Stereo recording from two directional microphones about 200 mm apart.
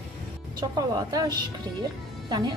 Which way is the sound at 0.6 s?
20° right (ahead or behind).